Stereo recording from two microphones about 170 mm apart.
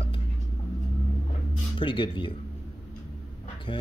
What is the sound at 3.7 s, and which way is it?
Speech, 30° left (ahead or behind).